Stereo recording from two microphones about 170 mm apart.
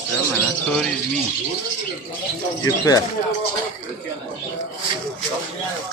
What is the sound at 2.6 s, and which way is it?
Speech, 20° left (ahead or behind).